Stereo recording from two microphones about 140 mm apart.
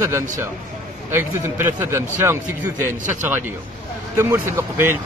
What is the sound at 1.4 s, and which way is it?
Speech, 20° right (ahead or behind).